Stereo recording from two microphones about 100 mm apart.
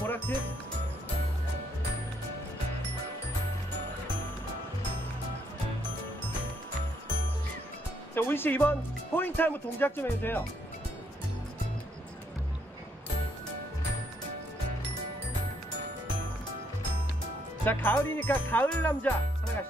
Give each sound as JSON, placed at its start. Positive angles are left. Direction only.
{"t": 8.1, "sound": "speech", "side_deg": 20}
{"t": 17.6, "sound": "speech", "side_deg": 20}